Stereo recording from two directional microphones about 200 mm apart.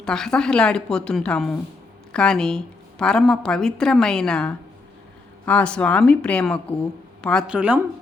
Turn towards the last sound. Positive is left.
turn(degrees=-5)  # may be behind; listen again after turning